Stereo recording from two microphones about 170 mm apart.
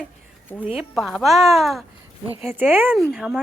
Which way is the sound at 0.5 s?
5° right (ahead or behind).